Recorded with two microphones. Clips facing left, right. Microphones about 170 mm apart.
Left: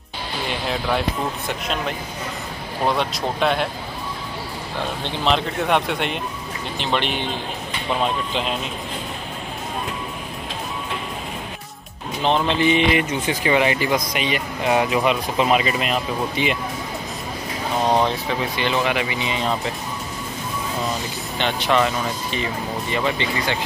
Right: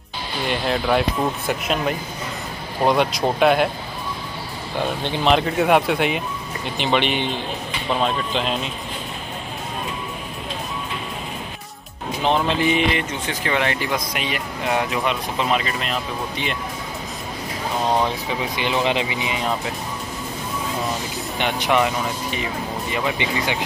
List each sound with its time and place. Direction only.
0.5 s speech: centre (ahead or behind)
5.0 s speech: 5° right (ahead or behind)
12.3 s speech: 5° right (ahead or behind)
12.9 s speech: 5° left (ahead or behind)
18.6 s speech: 15° right (ahead or behind)
21.4 s speech: 15° right (ahead or behind)